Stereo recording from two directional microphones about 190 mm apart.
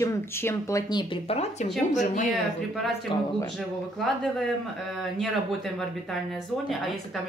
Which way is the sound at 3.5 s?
Centre (ahead or behind).